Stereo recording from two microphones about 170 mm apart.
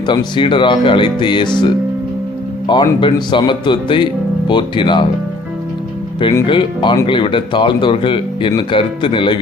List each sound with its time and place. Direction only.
0.0 s speech: 25° left (ahead or behind)
6.4 s speech: 30° left (ahead or behind)